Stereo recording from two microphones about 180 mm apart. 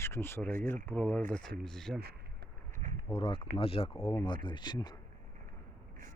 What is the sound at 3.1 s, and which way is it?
Speech, 30° left (ahead or behind).